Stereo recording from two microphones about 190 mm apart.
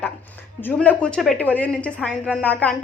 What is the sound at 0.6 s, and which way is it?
A woman's voice, 10° left (ahead or behind).